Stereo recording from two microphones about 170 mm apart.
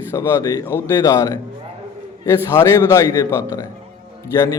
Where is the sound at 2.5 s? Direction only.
15° left (ahead or behind).